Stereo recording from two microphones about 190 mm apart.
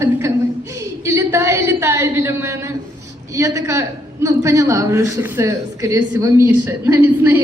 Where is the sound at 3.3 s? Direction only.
15° right (ahead or behind).